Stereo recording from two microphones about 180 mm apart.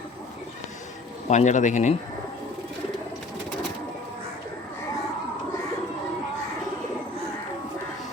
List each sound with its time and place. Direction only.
1.3 s speech: 40° left (ahead or behind)